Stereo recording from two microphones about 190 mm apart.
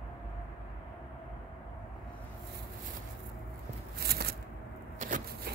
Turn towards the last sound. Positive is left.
turn(degrees=-40)  # may be behind; listen again after turning